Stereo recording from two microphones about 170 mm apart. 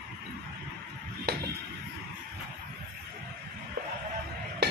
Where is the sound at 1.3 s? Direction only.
70° right (ahead or behind).